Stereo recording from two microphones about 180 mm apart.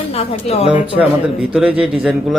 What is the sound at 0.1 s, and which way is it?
Speech, 35° left (ahead or behind).